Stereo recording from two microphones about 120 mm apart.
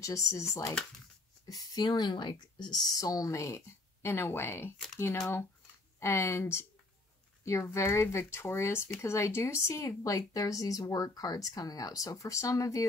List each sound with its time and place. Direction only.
0.0 s speech: 25° left (ahead or behind)
5.9 s speech: 25° left (ahead or behind)